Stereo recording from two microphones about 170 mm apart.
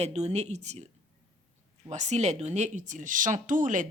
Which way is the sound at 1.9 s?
45° right (ahead or behind).